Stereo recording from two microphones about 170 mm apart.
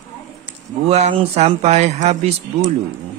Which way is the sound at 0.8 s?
40° right (ahead or behind).